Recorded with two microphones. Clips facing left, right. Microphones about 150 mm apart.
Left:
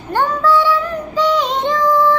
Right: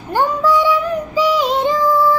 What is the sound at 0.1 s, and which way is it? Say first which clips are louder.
Child singing: even; 10° right (ahead or behind).